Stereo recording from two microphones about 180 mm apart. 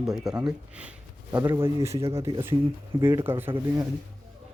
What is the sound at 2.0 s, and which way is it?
Speech, 30° right (ahead or behind).